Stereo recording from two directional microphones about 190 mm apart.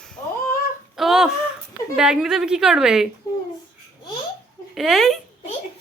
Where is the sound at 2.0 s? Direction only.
5° right (ahead or behind).